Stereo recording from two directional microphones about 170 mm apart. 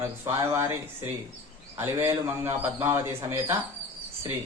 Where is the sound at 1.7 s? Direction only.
15° right (ahead or behind).